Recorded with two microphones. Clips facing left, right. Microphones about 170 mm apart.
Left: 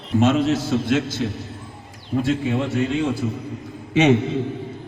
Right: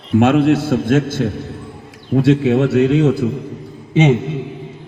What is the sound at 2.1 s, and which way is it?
A man's voice, 75° right (ahead or behind).